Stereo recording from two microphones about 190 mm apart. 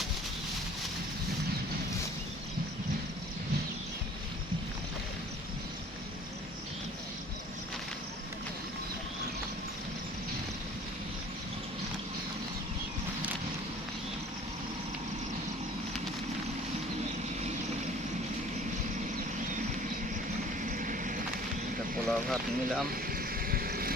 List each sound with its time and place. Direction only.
20.7 s vehicle: 45° right (ahead or behind)
22.0 s speech: centre (ahead or behind)
22.9 s vehicle: 50° right (ahead or behind)